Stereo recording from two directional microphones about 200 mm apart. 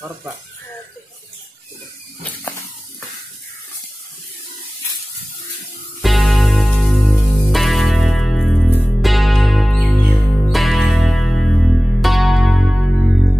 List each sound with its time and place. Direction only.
5.9 s music: centre (ahead or behind)